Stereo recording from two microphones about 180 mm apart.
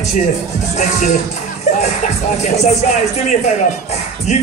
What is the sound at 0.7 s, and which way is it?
Speech, 40° left (ahead or behind).